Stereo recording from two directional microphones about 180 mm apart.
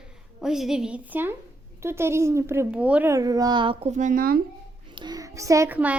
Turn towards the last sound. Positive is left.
turn(degrees=-10)  # may be behind; listen again after turning